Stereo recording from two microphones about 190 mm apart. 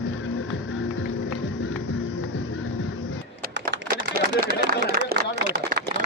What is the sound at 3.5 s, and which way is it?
Typing, 65° right (ahead or behind).